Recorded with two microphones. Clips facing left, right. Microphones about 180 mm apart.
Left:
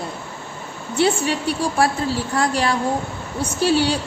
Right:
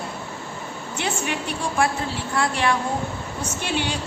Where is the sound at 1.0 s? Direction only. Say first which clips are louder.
Left 8 dB; 35° left (ahead or behind).